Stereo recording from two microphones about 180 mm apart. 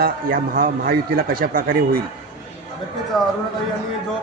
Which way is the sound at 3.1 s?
Centre (ahead or behind).